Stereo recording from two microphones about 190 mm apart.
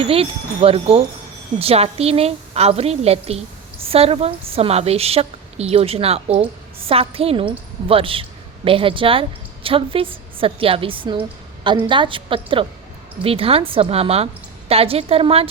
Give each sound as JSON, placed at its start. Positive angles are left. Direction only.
{"t": 0.0, "sound": "a woman's voice", "side_deg": -30}